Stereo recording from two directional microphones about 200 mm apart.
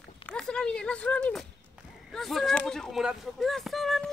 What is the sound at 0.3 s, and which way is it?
Speech, 5° left (ahead or behind).